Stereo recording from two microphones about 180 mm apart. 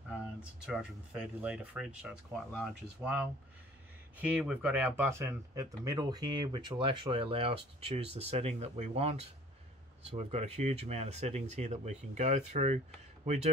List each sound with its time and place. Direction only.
0.4 s speech: 5° right (ahead or behind); by 12.7 s 40° right (ahead or behind)